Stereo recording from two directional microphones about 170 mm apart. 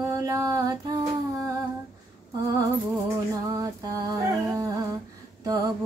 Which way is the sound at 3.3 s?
20° right (ahead or behind).